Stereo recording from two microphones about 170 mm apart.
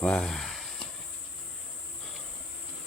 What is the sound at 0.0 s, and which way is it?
Speech, 5° left (ahead or behind).